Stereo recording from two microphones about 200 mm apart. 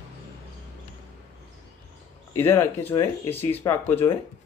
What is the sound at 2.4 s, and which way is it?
Speech, 10° left (ahead or behind).